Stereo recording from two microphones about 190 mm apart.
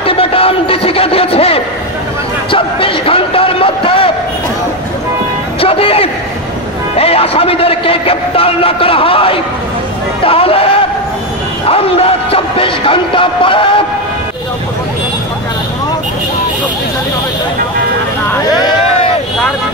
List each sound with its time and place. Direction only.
0.0 s music: 30° left (ahead or behind)
2.5 s a sound: 30° left (ahead or behind)
5.6 s vehicle: 30° left (ahead or behind)
7.0 s a man's voice: 30° left (ahead or behind)